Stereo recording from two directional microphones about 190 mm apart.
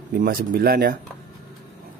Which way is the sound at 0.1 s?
50° right (ahead or behind).